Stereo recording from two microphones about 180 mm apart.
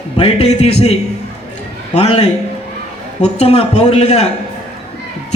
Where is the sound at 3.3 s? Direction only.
35° left (ahead or behind).